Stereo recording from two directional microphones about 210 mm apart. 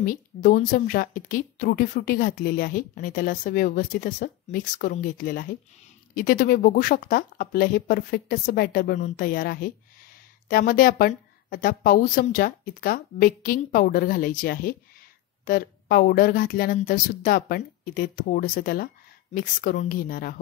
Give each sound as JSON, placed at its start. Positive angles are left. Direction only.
{"t": 0.0, "sound": "a woman's voice", "side_deg": 40}